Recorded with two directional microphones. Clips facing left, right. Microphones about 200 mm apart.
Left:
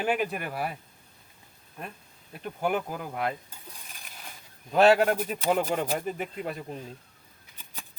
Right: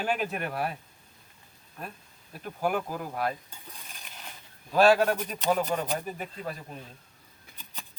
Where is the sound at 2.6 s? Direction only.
20° left (ahead or behind).